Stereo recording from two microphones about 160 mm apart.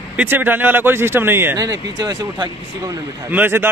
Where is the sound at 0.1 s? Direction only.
10° right (ahead or behind); by 3.0 s 25° right (ahead or behind).